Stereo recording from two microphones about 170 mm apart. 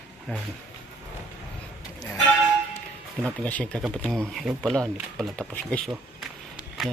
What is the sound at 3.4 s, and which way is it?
Speech, 10° left (ahead or behind).